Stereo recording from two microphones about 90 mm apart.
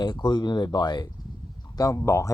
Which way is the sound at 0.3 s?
55° left (ahead or behind).